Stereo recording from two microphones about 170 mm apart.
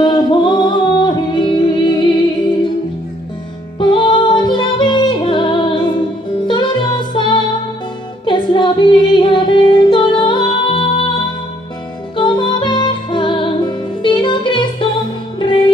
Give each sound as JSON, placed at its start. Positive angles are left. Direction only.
{"t": 0.0, "sound": "singing", "side_deg": 25}
{"t": 3.8, "sound": "music", "side_deg": 25}
{"t": 8.3, "sound": "female singing", "side_deg": 25}
{"t": 12.2, "sound": "music", "side_deg": 25}